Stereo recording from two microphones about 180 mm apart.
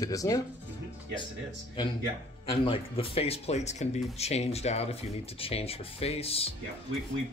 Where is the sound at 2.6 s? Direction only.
30° left (ahead or behind).